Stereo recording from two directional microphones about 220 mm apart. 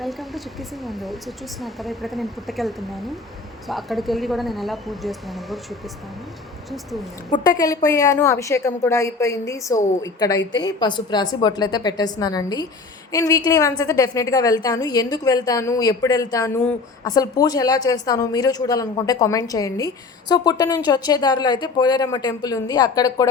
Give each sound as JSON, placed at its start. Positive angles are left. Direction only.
{"t": 0.0, "sound": "speech", "side_deg": 0}
{"t": 7.3, "sound": "a woman's voice", "side_deg": 15}